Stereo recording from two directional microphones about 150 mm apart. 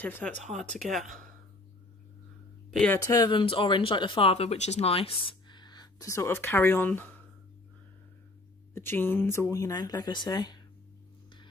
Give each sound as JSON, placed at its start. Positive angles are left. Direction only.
{"t": 0.0, "sound": "speech", "side_deg": 10}
{"t": 2.9, "sound": "speech", "side_deg": 20}
{"t": 3.3, "sound": "speech", "side_deg": 35}
{"t": 8.7, "sound": "speech", "side_deg": 15}